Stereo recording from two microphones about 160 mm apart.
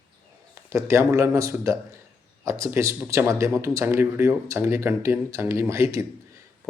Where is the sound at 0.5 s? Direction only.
15° right (ahead or behind).